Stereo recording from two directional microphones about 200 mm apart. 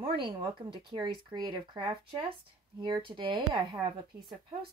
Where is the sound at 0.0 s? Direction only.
25° right (ahead or behind).